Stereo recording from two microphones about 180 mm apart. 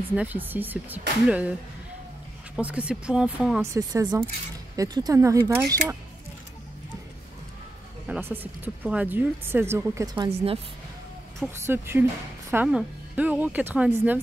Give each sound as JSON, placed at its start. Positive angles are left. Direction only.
{"t": 0.1, "sound": "speech", "side_deg": -10}
{"t": 2.5, "sound": "speech", "side_deg": -5}
{"t": 3.6, "sound": "speech", "side_deg": -20}
{"t": 8.1, "sound": "speech", "side_deg": -10}
{"t": 11.4, "sound": "speech", "side_deg": -10}